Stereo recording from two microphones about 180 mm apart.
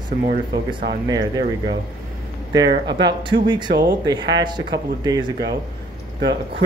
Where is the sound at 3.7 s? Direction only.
70° right (ahead or behind).